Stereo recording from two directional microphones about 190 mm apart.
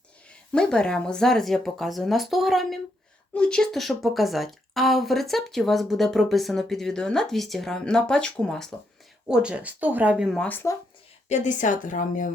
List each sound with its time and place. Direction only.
0.5 s speech: 5° left (ahead or behind)
11.3 s a woman's voice: 40° left (ahead or behind)